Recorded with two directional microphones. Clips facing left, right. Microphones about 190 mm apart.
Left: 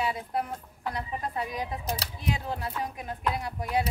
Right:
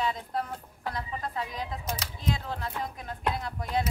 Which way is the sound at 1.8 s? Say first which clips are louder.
Left 2 dB; 35° left (ahead or behind).